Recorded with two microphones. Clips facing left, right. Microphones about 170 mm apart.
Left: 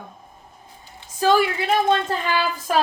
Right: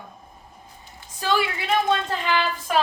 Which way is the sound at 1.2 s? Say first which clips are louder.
Left 6 dB; 40° left (ahead or behind).